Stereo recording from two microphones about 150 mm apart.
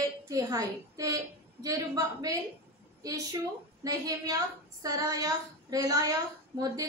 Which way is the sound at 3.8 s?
25° right (ahead or behind).